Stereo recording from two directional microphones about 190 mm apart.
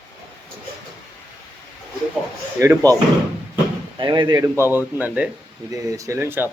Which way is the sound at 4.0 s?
25° right (ahead or behind).